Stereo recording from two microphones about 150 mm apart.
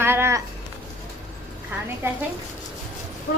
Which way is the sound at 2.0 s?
15° right (ahead or behind).